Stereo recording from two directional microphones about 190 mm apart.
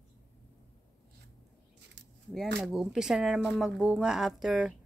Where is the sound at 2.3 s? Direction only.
Centre (ahead or behind).